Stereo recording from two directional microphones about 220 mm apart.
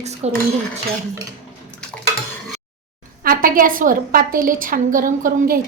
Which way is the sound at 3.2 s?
40° right (ahead or behind).